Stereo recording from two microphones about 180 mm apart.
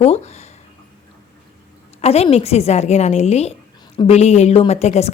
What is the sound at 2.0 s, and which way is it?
A woman's voice, 35° left (ahead or behind).